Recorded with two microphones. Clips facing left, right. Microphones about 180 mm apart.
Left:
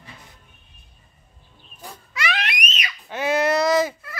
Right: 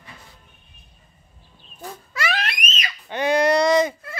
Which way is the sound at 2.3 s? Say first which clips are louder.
Left 1 dB; 40° right (ahead or behind).